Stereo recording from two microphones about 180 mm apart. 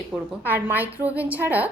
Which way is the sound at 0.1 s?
5° right (ahead or behind).